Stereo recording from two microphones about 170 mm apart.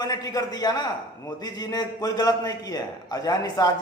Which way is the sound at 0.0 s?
20° left (ahead or behind).